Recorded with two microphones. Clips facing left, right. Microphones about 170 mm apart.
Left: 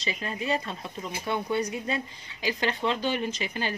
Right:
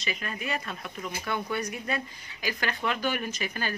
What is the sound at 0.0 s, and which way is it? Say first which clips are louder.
Speech: left 2 dB; 25° left (ahead or behind).